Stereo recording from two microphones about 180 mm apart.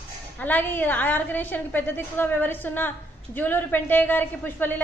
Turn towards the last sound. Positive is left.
turn(degrees=10)  # may be behind; listen again after turning